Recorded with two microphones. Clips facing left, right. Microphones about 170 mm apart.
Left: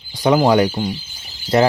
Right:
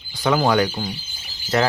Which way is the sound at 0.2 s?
20° left (ahead or behind).